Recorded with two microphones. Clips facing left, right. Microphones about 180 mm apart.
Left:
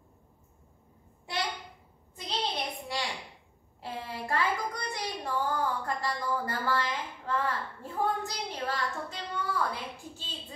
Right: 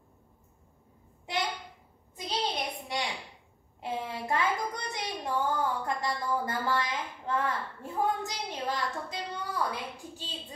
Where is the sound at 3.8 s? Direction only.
20° right (ahead or behind).